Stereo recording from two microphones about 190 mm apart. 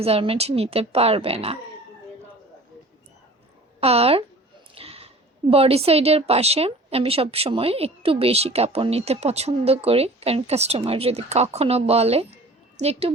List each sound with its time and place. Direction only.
0.0 s a woman's voice: 30° right (ahead or behind)
3.8 s a woman's voice: 30° right (ahead or behind)